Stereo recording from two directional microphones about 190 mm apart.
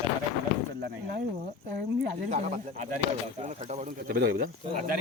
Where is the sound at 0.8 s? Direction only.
55° right (ahead or behind).